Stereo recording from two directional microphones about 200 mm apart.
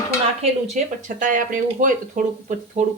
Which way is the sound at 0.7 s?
40° right (ahead or behind).